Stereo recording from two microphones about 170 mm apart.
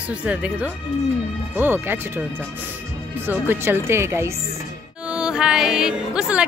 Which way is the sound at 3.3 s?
15° right (ahead or behind).